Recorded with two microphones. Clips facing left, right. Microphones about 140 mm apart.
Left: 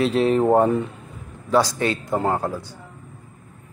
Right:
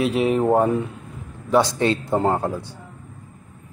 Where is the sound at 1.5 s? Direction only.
25° right (ahead or behind).